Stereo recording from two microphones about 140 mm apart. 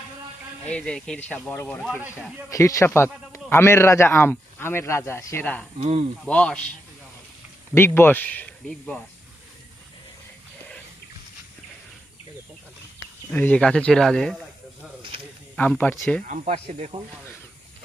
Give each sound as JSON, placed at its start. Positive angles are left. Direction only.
{"t": 0.6, "sound": "speech", "side_deg": 10}
{"t": 2.0, "sound": "speech", "side_deg": -10}
{"t": 2.5, "sound": "speech", "side_deg": 20}
{"t": 5.8, "sound": "speech", "side_deg": -50}
{"t": 6.2, "sound": "speech", "side_deg": 10}
{"t": 13.3, "sound": "speech", "side_deg": 10}
{"t": 15.1, "sound": "snake", "side_deg": -40}
{"t": 15.5, "sound": "speech", "side_deg": 10}
{"t": 16.2, "sound": "speech", "side_deg": -65}